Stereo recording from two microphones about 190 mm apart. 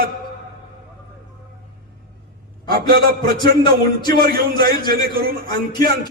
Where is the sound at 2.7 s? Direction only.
55° right (ahead or behind).